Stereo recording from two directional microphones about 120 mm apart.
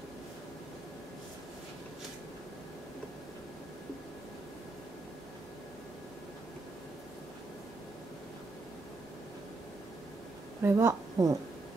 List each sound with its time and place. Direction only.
10.6 s a woman's voice: 20° right (ahead or behind)